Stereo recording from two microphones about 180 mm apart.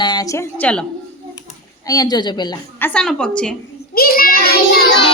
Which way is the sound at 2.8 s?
5° left (ahead or behind).